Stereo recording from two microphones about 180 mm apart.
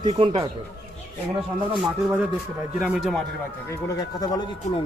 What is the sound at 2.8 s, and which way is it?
Speech, 5° right (ahead or behind).